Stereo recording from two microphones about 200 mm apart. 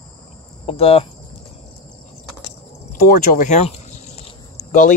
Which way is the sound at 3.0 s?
40° left (ahead or behind).